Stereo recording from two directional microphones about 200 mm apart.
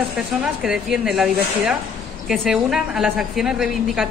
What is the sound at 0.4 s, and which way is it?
A woman's voice, 5° right (ahead or behind).